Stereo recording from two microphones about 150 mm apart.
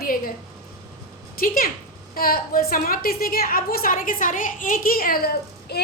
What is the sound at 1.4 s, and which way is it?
A woman's voice, 80° left.